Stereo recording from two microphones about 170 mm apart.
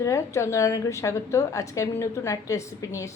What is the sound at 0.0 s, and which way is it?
A woman's voice, 15° left (ahead or behind).